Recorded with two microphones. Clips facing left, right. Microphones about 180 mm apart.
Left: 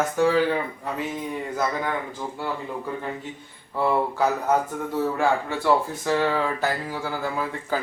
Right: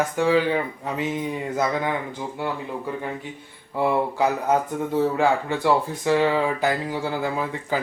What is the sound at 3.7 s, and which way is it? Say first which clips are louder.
Speech: right 1 dB; 15° right (ahead or behind).